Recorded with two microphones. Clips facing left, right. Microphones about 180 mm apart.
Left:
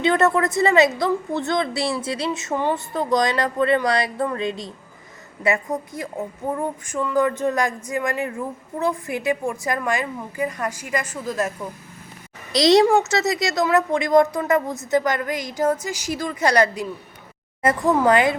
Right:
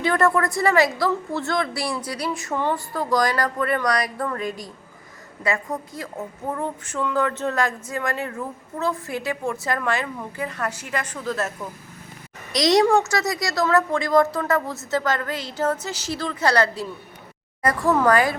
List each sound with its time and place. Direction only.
0.0 s a woman's voice: 20° left (ahead or behind)
12.5 s a woman's voice: 30° left (ahead or behind)